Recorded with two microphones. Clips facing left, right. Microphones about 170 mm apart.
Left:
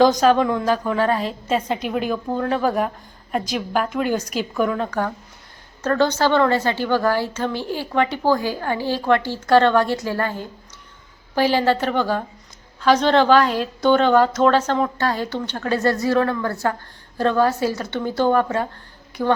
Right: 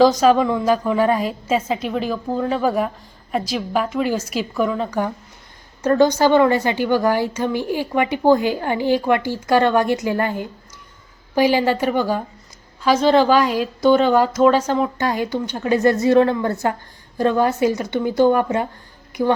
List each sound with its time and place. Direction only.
0.0 s a woman's voice: centre (ahead or behind)
4.9 s a woman's voice: 15° right (ahead or behind)